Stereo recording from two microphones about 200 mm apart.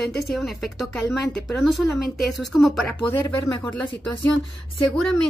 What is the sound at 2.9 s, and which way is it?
Speech, 10° left (ahead or behind).